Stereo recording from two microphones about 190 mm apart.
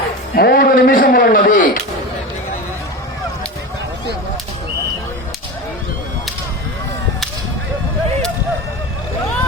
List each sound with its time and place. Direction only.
0.3 s a man's voice: 55° left (ahead or behind)